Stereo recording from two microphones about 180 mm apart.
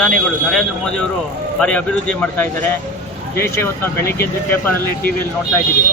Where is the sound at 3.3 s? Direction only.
15° left (ahead or behind).